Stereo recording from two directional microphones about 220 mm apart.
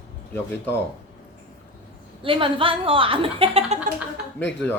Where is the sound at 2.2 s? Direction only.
25° right (ahead or behind).